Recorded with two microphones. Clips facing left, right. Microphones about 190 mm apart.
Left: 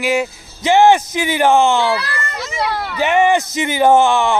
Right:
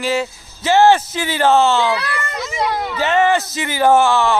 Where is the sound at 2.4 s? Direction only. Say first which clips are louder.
Even; 5° left (ahead or behind).